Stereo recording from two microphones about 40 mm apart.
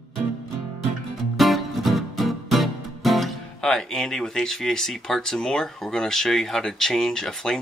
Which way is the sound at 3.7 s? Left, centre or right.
Centre.